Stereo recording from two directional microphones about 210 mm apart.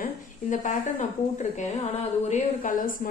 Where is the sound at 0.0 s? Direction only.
35° left (ahead or behind).